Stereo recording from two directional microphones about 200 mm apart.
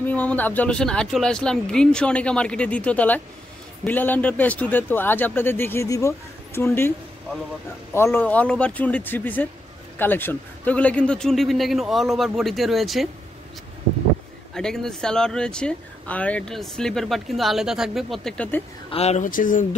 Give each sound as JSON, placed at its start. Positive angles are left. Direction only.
{"t": 0.0, "sound": "speech", "side_deg": 10}
{"t": 7.9, "sound": "speech", "side_deg": 10}
{"t": 14.5, "sound": "speech", "side_deg": 5}
{"t": 18.9, "sound": "speech", "side_deg": 30}